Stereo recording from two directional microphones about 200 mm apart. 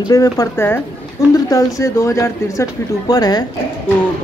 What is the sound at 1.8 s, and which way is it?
Speech, 15° left (ahead or behind).